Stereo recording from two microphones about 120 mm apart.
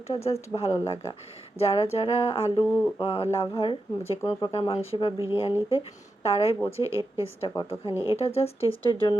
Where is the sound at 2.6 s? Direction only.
15° left (ahead or behind).